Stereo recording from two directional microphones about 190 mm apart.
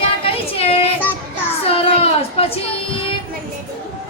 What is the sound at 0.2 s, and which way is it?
Child singing, 30° left (ahead or behind).